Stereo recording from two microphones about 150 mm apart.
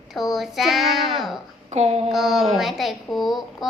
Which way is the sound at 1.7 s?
45° right (ahead or behind).